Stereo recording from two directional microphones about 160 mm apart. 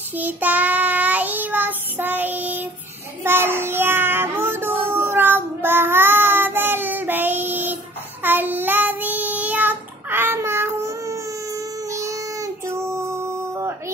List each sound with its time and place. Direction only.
0.1 s child singing: 10° right (ahead or behind)